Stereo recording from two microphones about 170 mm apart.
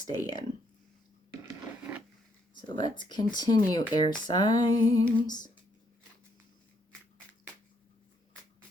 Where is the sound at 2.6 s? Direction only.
25° left (ahead or behind).